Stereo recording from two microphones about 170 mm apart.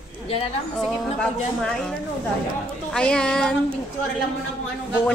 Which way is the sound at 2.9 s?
5° left (ahead or behind).